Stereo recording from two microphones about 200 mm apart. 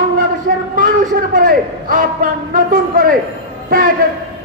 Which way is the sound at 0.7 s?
45° right (ahead or behind).